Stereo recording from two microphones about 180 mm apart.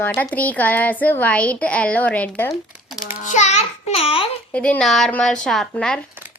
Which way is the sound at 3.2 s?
40° left (ahead or behind).